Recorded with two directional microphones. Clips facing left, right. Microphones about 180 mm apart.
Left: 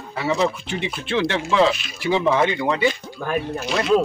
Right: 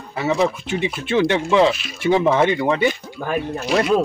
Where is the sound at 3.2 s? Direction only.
Centre (ahead or behind).